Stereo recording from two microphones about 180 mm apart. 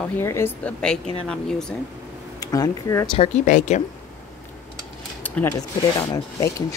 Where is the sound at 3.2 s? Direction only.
40° left (ahead or behind).